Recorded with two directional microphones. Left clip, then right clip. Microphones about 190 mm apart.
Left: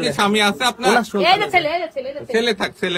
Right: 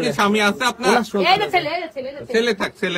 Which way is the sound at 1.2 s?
50° left (ahead or behind).